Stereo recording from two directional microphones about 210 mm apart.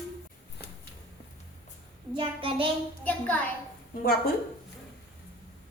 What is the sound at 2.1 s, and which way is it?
Child singing, 25° right (ahead or behind).